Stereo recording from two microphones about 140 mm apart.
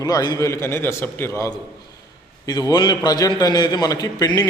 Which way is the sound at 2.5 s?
30° left (ahead or behind).